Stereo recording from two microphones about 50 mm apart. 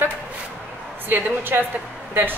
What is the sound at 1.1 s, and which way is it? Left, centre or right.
A woman's voice, right.